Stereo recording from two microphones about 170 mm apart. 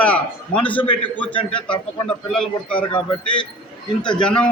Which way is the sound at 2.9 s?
30° left (ahead or behind).